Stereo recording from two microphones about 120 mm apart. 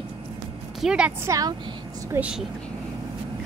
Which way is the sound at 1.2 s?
25° right (ahead or behind).